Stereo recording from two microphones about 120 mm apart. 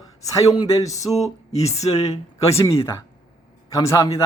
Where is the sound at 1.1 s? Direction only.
65° left (ahead or behind).